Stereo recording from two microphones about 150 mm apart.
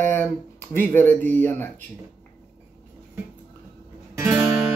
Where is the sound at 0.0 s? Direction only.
10° left (ahead or behind).